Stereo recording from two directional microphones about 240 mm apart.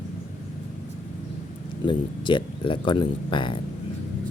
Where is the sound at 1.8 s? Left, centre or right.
Centre.